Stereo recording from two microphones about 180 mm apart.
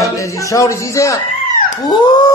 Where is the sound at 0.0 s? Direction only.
15° left (ahead or behind).